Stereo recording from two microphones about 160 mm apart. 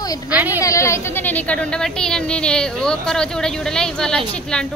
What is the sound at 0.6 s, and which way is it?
Speech, 20° left (ahead or behind).